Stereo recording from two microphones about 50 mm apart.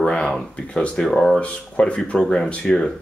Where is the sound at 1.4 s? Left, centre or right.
Left.